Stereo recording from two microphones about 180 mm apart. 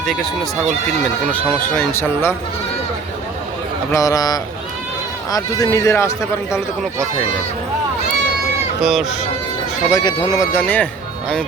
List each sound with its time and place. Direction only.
0.0 s speech: centre (ahead or behind)
1.7 s speech: 10° left (ahead or behind)
3.9 s speech: 20° left (ahead or behind)
8.8 s speech: centre (ahead or behind)
9.9 s speech: 25° left (ahead or behind)